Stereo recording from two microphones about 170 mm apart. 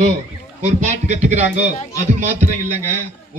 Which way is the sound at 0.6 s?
45° right (ahead or behind).